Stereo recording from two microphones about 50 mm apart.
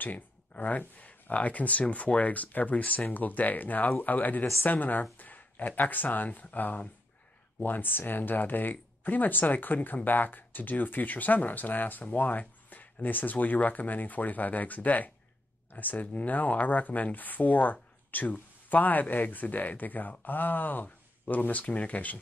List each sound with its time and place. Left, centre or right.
0.0 s speech: left